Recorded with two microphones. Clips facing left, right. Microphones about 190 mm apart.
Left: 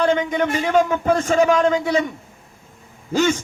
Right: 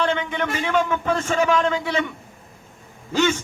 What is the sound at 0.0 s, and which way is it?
A man's voice, 35° left (ahead or behind).